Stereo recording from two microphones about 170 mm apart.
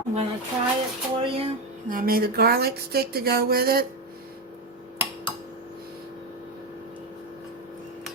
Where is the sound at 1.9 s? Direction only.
55° right (ahead or behind).